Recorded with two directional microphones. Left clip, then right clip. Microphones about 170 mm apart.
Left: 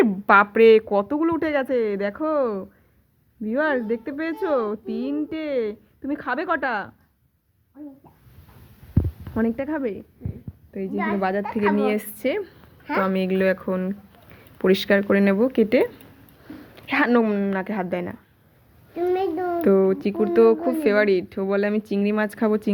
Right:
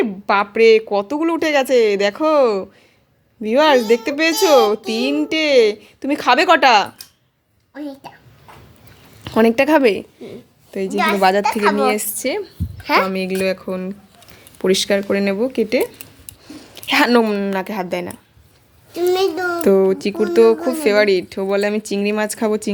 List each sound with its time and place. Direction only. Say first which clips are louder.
0.0 s speech: left 1 dB; 10° right (ahead or behind)
9.2 s a woman's voice: right 13 dB; 25° right (ahead or behind)
10.9 s a child's voice: right 9 dB; 65° right (ahead or behind)
11.2 s a child's voice: right 11 dB; 40° right (ahead or behind)
11.4 s a woman's voice: right 7 dB; 90° right
11.9 s speech: right 5 dB; 20° right (ahead or behind)
12.8 s speech: right 8 dB; 90° right
13.1 s speech: right 2 dB; 15° right (ahead or behind)
16.7 s speech: right 6 dB; 25° right (ahead or behind)
18.9 s a child's voice: right 6 dB; 80° right
19.6 s speech: right 5 dB; 30° right (ahead or behind)